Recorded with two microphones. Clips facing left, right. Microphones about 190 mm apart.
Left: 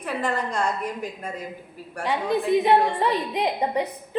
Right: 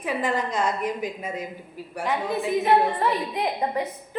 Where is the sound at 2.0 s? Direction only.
20° left (ahead or behind).